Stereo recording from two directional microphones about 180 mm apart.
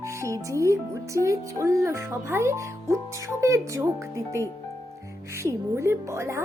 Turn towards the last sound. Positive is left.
turn(degrees=-15)  # may be behind; listen again after turning